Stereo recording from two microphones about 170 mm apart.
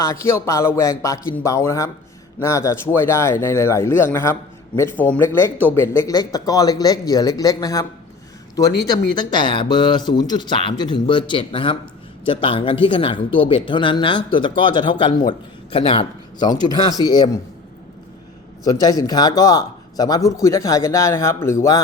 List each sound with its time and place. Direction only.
0.0 s a man's voice: 15° left (ahead or behind)
18.6 s speech: 20° left (ahead or behind)